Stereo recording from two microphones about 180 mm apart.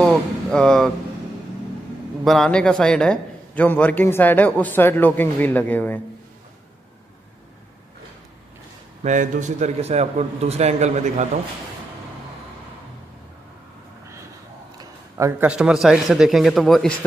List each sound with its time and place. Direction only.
0.0 s speech: 5° left (ahead or behind)
2.2 s a man's voice: centre (ahead or behind)
9.0 s a man's voice: 45° right (ahead or behind)
14.8 s a sound: 15° right (ahead or behind)
15.5 s a man's voice: 5° right (ahead or behind)